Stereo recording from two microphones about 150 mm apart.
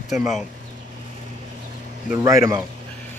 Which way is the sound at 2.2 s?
20° right (ahead or behind).